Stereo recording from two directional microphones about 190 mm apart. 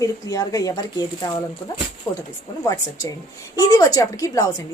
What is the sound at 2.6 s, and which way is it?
A woman's voice, 20° left (ahead or behind).